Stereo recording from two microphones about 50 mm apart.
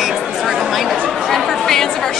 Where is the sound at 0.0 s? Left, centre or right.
Centre.